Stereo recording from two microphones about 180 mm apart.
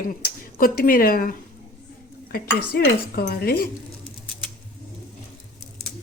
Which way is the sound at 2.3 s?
55° left (ahead or behind).